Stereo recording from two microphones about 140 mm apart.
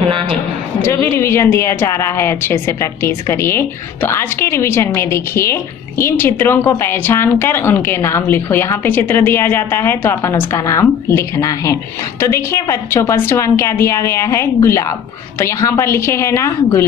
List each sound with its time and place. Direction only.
0.8 s a woman's voice: 20° left (ahead or behind)